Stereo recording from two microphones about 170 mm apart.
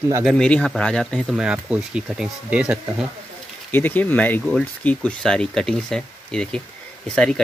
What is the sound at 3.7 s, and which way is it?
Speech, 10° left (ahead or behind).